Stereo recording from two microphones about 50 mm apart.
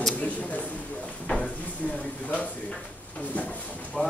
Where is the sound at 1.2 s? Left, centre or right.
Centre.